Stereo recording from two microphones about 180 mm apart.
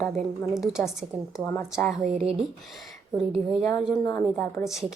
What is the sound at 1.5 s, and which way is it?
Speech, 10° left (ahead or behind).